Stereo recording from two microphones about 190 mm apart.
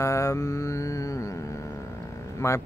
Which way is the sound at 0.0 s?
15° left (ahead or behind).